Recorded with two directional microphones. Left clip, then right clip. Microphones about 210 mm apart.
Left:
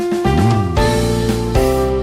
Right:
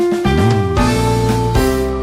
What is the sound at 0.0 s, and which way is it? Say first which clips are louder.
Music: right 2 dB; centre (ahead or behind).